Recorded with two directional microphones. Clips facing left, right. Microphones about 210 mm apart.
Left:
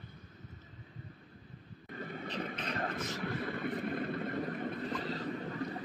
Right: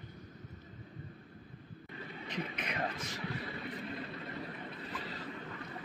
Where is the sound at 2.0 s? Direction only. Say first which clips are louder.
Left 2 dB; 50° left (ahead or behind).